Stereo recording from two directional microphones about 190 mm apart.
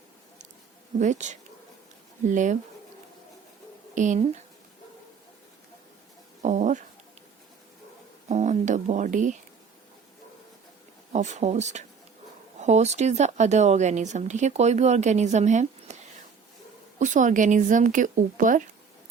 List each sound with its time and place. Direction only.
0.9 s speech: 40° right (ahead or behind)
3.9 s speech: 40° right (ahead or behind)
6.4 s speech: 40° right (ahead or behind)
8.3 s speech: 40° right (ahead or behind)
11.1 s speech: 40° right (ahead or behind)
17.0 s speech: 40° right (ahead or behind)